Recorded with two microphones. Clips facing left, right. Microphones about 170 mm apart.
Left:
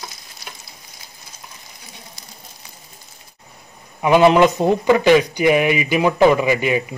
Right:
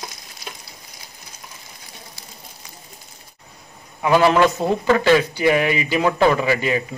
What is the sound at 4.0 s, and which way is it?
A man's voice, 20° left (ahead or behind).